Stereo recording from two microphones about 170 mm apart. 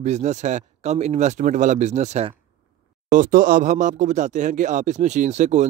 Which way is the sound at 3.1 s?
50° right (ahead or behind).